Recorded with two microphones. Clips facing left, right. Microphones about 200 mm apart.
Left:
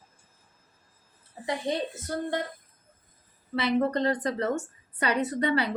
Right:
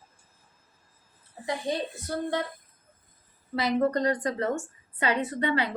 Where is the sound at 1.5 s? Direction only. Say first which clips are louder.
Left 1 dB; 20° left (ahead or behind).